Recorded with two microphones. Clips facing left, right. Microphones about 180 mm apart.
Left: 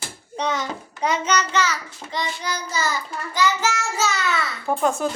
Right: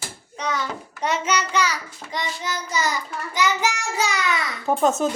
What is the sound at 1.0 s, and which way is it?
Child singing, 5° right (ahead or behind).